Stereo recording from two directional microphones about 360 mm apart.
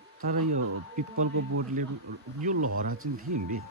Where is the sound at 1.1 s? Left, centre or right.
Right.